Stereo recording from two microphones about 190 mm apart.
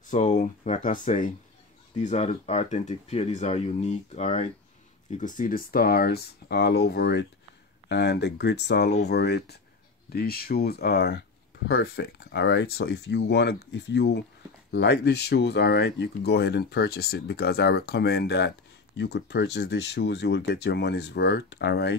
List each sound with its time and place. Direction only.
0.0 s speech: 40° left (ahead or behind); by 21.9 s 60° left (ahead or behind)